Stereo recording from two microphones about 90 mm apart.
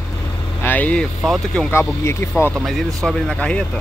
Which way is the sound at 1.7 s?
30° left (ahead or behind).